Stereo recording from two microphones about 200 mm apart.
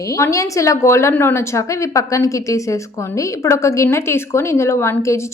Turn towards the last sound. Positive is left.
turn(degrees=15)  # may be behind; listen again after turning